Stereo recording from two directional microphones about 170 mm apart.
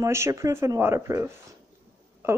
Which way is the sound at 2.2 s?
15° right (ahead or behind).